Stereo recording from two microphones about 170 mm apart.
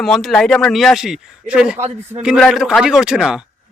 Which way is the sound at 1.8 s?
40° right (ahead or behind).